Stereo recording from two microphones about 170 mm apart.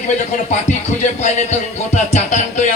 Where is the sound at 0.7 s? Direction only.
45° left (ahead or behind).